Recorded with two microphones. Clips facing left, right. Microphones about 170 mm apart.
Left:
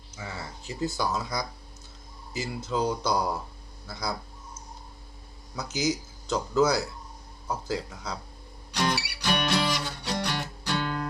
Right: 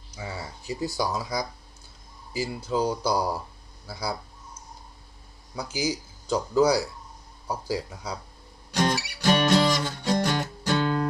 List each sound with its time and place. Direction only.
0.2 s speech: 15° right (ahead or behind)
5.5 s speech: 10° right (ahead or behind)
8.7 s music: 45° right (ahead or behind)